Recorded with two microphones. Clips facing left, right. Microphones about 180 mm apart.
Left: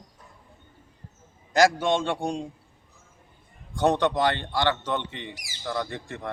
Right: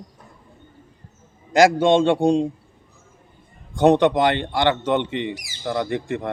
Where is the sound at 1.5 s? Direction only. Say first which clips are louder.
Right 6 dB; 25° right (ahead or behind).